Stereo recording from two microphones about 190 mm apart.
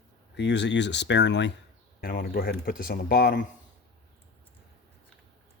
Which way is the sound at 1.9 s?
45° left (ahead or behind).